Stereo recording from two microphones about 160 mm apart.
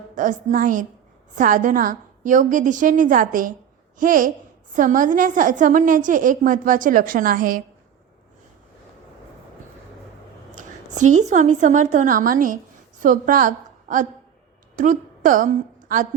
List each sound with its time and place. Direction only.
0.2 s a woman's voice: 55° right (ahead or behind)
10.5 s a woman's voice: 50° right (ahead or behind)